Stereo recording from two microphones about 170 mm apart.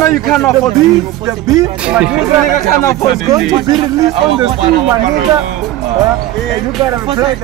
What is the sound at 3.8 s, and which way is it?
Speech, 30° right (ahead or behind).